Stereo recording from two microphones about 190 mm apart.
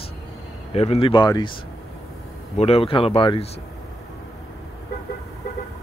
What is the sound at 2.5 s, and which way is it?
Speech, 30° left (ahead or behind).